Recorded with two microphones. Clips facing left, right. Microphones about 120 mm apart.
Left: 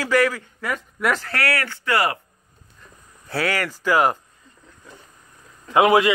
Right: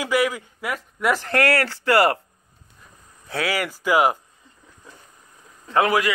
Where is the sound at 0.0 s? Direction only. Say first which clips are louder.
Left 2 dB; 15° right (ahead or behind).